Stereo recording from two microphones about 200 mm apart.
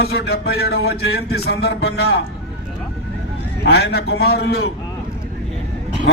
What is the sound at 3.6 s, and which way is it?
A man's voice, 55° left (ahead or behind).